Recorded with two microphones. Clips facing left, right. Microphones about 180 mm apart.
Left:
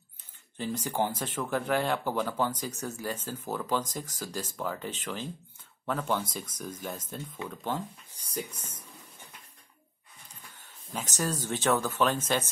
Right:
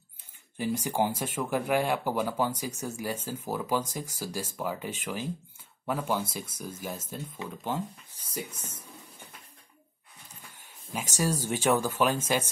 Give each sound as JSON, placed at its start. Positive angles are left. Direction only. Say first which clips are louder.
{"t": 0.6, "sound": "speech", "louder": "right 2 dB", "side_deg": -10}
{"t": 8.3, "sound": "speech", "louder": "left 1 dB", "side_deg": 0}
{"t": 10.6, "sound": "speech", "louder": "right 1 dB", "side_deg": -10}